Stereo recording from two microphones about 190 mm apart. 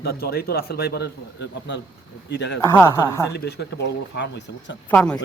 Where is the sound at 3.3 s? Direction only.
60° left (ahead or behind).